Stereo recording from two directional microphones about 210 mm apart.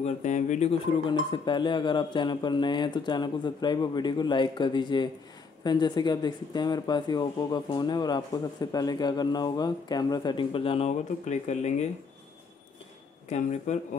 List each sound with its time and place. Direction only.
0.0 s speech: 35° left (ahead or behind)
13.3 s speech: 35° left (ahead or behind)